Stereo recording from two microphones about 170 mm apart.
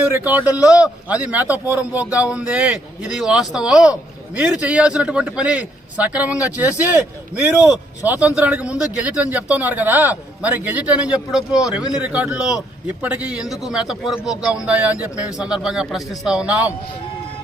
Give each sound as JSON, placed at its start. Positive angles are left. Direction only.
{"t": 0.1, "sound": "a man's voice", "side_deg": -10}
{"t": 8.0, "sound": "a man's voice", "side_deg": -10}